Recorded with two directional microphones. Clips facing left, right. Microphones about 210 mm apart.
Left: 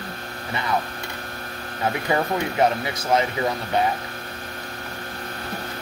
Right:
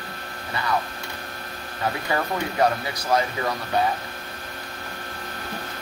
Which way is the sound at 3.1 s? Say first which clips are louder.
Left 2 dB; 20° left (ahead or behind).